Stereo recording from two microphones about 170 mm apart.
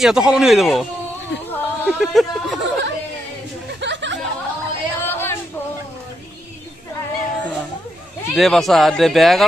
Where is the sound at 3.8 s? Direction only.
90° right.